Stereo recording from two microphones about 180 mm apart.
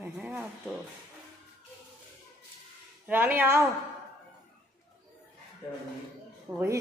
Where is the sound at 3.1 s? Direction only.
10° right (ahead or behind).